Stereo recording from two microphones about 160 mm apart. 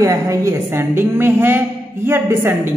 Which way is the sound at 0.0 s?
20° right (ahead or behind).